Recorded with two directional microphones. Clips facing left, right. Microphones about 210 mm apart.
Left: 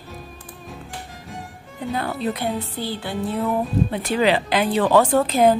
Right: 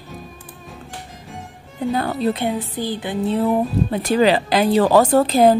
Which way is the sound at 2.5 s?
15° right (ahead or behind).